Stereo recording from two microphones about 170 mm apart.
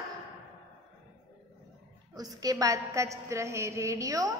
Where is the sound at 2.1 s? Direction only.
20° right (ahead or behind).